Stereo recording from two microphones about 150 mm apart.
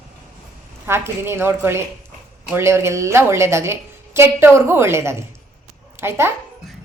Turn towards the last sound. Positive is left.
turn(degrees=-15)  # may be behind; listen again after turning